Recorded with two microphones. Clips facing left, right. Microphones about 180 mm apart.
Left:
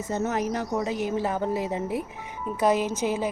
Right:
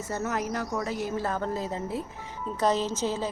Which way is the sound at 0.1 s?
20° left (ahead or behind).